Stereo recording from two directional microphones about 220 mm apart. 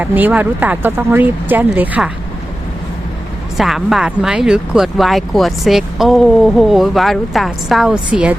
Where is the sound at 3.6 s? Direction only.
Centre (ahead or behind).